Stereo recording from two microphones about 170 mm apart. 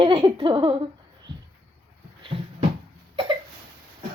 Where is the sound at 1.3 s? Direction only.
30° right (ahead or behind).